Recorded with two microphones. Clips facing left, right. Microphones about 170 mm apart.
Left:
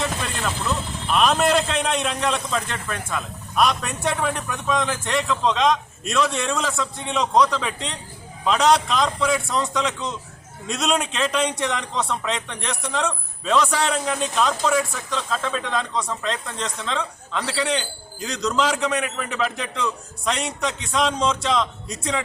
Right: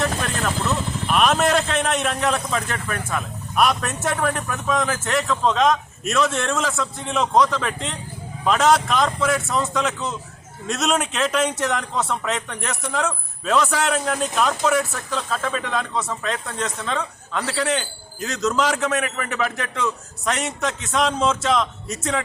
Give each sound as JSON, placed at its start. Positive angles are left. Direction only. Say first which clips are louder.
{"t": 1.0, "sound": "a man's voice", "louder": "even", "side_deg": 0}